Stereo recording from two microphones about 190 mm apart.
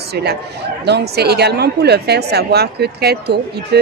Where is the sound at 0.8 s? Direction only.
60° right (ahead or behind).